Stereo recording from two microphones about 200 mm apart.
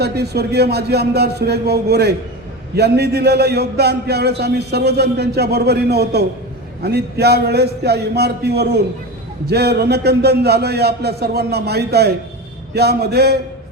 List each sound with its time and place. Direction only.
0.0 s a man's voice: 55° right (ahead or behind)